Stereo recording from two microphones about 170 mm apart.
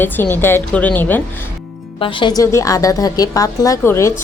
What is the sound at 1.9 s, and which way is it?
Speech, 30° left (ahead or behind).